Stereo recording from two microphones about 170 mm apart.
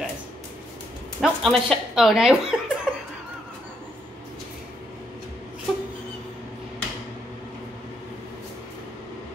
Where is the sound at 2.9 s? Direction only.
5° right (ahead or behind).